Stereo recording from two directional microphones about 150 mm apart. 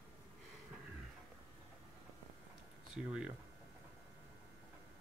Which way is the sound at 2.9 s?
5° right (ahead or behind).